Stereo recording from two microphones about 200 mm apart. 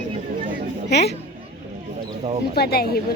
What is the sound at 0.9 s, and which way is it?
Speech, 55° left (ahead or behind).